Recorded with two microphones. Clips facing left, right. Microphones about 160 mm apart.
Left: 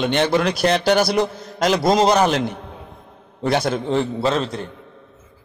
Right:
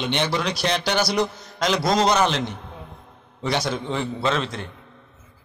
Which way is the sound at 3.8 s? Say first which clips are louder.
Left 5 dB; 35° left (ahead or behind).